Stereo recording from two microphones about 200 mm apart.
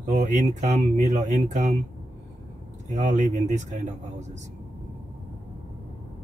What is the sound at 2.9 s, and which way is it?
Speech, 40° right (ahead or behind).